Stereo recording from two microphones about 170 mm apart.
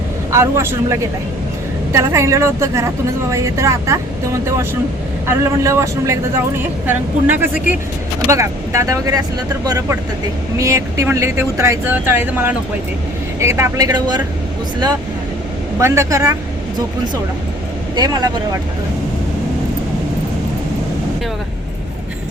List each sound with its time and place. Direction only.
0.3 s speech: 15° right (ahead or behind)
15.8 s speech: 20° right (ahead or behind)
17.9 s speech: 25° right (ahead or behind)